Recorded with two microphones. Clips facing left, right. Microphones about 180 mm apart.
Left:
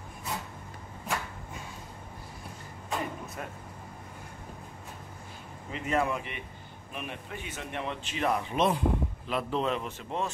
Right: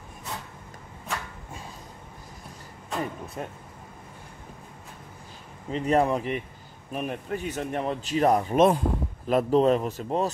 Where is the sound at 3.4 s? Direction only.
30° right (ahead or behind).